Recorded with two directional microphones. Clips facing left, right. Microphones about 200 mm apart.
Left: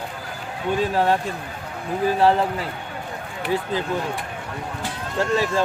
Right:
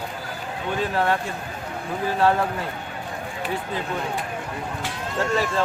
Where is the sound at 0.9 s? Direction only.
15° left (ahead or behind).